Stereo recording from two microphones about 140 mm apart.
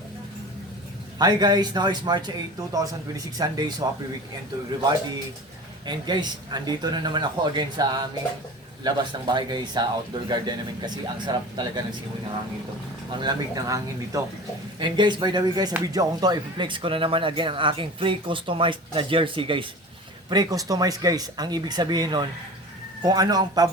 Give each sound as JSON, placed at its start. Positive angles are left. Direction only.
{"t": 1.2, "sound": "a man's voice", "side_deg": -30}
{"t": 5.8, "sound": "speech", "side_deg": -30}
{"t": 13.1, "sound": "a man's voice", "side_deg": -30}
{"t": 20.3, "sound": "a man's voice", "side_deg": -25}